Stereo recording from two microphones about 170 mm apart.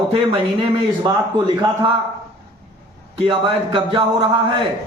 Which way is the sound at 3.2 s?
30° right (ahead or behind).